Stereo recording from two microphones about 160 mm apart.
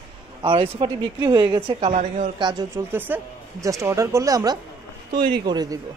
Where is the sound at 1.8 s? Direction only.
45° right (ahead or behind).